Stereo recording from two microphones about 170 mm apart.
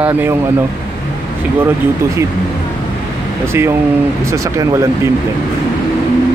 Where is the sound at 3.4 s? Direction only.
15° right (ahead or behind).